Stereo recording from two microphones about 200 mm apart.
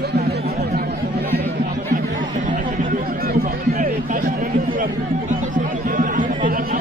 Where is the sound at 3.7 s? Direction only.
40° right (ahead or behind).